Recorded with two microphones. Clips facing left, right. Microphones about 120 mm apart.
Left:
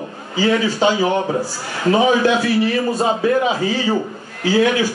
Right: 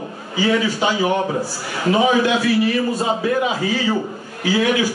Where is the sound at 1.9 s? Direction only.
35° left (ahead or behind).